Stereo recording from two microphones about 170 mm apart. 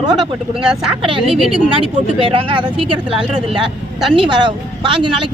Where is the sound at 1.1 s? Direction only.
30° right (ahead or behind).